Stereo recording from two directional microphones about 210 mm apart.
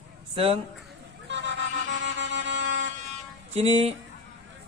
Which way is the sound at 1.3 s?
60° right (ahead or behind).